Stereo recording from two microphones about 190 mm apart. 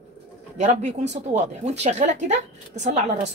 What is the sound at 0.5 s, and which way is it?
A woman's voice, 40° right (ahead or behind).